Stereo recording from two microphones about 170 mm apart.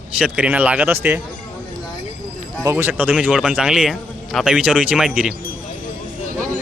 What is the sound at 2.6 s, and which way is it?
A man's voice, 15° right (ahead or behind).